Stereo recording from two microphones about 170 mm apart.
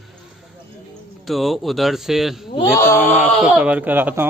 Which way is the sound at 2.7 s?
15° left (ahead or behind).